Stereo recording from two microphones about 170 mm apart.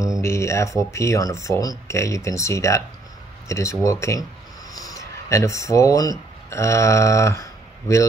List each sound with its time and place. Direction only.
0.2 s speech: 15° left (ahead or behind)